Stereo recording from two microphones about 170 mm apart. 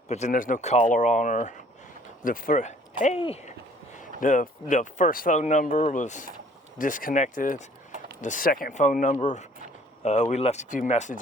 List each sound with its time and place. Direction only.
0.1 s speech: 45° left (ahead or behind)
3.2 s speech: 35° left (ahead or behind)
3.9 s speech: 50° left (ahead or behind)